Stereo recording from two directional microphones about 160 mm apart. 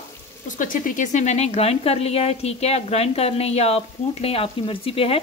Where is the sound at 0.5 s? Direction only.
55° left (ahead or behind).